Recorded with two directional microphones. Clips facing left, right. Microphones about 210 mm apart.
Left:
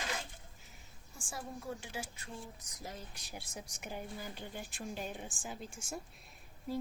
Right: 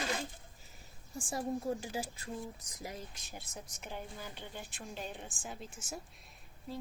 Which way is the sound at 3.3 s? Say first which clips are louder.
Left 3 dB; 10° left (ahead or behind).